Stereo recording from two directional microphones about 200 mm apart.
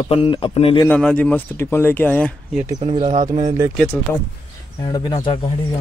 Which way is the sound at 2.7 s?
30° right (ahead or behind).